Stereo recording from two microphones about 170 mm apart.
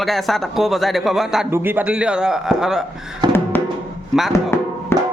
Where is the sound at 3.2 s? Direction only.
25° right (ahead or behind).